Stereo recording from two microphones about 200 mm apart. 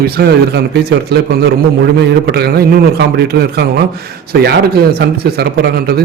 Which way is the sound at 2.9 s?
55° right (ahead or behind).